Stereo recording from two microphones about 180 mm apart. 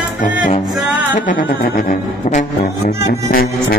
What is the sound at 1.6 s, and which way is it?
Music, 45° left (ahead or behind).